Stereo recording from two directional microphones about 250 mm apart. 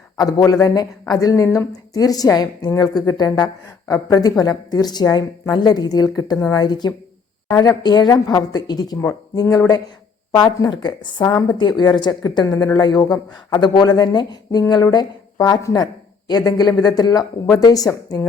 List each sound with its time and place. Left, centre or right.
0.2 s speech: centre